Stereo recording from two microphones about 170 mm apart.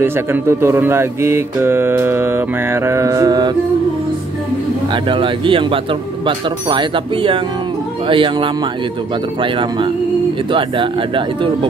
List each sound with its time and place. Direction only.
0.0 s speech: 15° right (ahead or behind)
5.1 s speech: 30° right (ahead or behind)